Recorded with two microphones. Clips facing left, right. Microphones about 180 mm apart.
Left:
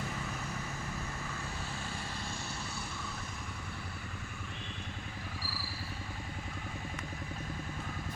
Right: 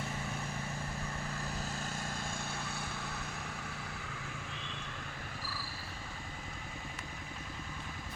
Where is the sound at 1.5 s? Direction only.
40° right (ahead or behind); by 4.4 s 80° right.